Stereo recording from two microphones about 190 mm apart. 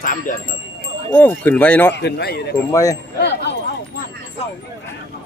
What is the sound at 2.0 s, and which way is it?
Speech, 60° left (ahead or behind).